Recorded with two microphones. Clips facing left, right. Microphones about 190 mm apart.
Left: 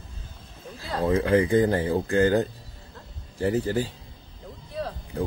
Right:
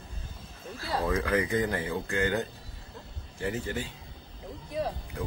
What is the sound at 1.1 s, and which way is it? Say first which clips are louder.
Speech: left 8 dB; 30° left (ahead or behind).